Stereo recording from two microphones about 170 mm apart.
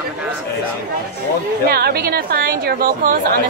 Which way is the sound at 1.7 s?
65° right (ahead or behind).